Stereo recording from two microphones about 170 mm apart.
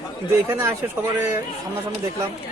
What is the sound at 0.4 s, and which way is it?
Speech, 15° right (ahead or behind).